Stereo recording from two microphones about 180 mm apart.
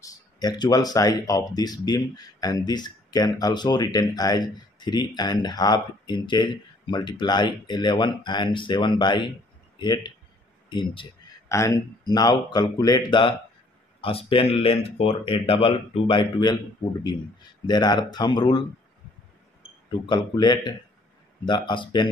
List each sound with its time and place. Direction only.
0.0 s speech: 20° left (ahead or behind)
17.6 s speech: 25° left (ahead or behind)
20.1 s speech: 25° left (ahead or behind)